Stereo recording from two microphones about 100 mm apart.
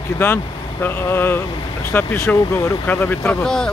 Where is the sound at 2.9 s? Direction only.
15° left (ahead or behind).